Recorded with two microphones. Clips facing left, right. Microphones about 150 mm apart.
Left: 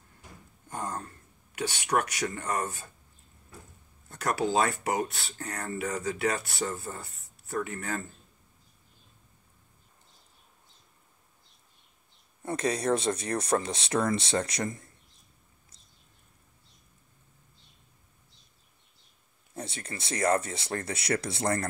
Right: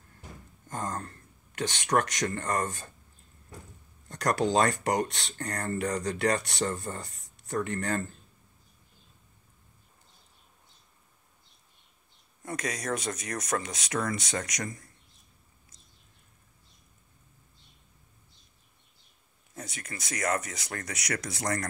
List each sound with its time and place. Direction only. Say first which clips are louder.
0.7 s speech: right 1 dB; 10° left (ahead or behind)
4.1 s speech: right 2 dB; 5° left (ahead or behind)
12.4 s speech: left 6 dB; 30° left (ahead or behind)
19.5 s speech: left 3 dB; 30° left (ahead or behind)